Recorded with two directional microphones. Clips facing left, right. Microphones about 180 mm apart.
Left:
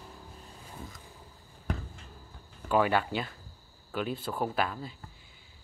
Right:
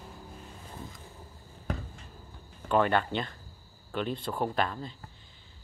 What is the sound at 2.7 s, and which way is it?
Speech, 5° left (ahead or behind).